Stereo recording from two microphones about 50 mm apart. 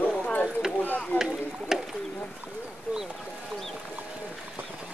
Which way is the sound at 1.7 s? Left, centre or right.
Centre.